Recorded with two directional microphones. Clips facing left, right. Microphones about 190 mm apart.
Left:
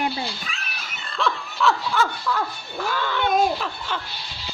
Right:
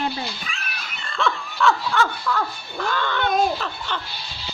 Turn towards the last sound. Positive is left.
turn(degrees=5)  # may be behind; listen again after turning